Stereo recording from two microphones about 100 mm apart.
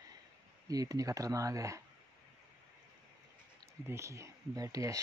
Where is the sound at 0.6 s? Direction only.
35° right (ahead or behind).